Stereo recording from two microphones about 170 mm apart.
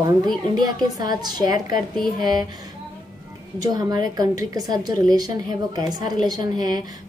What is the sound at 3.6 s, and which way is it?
A woman's voice, 20° right (ahead or behind).